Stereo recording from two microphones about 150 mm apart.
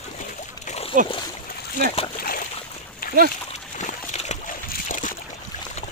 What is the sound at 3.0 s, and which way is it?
Splash, 75° left (ahead or behind).